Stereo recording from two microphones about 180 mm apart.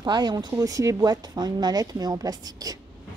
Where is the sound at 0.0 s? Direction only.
25° right (ahead or behind).